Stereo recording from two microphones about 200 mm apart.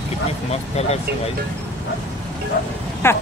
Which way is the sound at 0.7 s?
30° left (ahead or behind).